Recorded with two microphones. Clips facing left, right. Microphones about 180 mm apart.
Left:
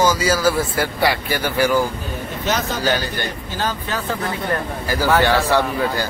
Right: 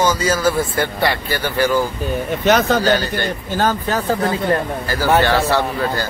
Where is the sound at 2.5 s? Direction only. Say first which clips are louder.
Right 8 dB; 65° right (ahead or behind).